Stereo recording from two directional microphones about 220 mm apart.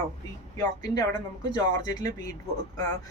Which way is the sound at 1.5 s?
15° left (ahead or behind).